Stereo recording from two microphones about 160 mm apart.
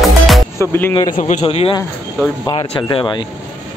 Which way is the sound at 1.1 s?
50° left (ahead or behind).